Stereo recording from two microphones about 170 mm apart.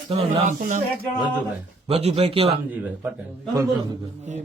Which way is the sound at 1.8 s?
40° right (ahead or behind).